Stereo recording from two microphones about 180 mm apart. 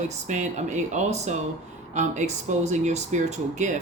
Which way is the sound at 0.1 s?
40° right (ahead or behind).